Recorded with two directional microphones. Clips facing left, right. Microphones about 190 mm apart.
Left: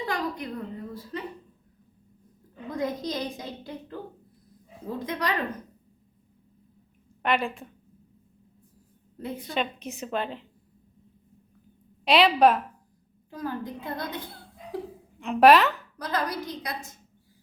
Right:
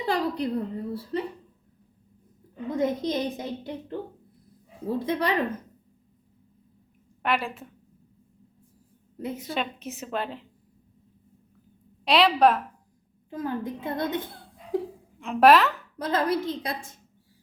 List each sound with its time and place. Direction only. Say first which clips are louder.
0.0 s a woman's voice: right 4 dB; 30° right (ahead or behind)
2.6 s a woman's voice: right 4 dB; 25° right (ahead or behind)
7.2 s a woman's voice: left 1 dB; 5° right (ahead or behind)
9.2 s a woman's voice: even; 5° right (ahead or behind)
12.0 s a woman's voice: even; centre (ahead or behind)
13.3 s a woman's voice: right 3 dB; 25° right (ahead or behind)
15.2 s a woman's voice: even; centre (ahead or behind)
16.0 s a woman's voice: right 7 dB; 25° right (ahead or behind)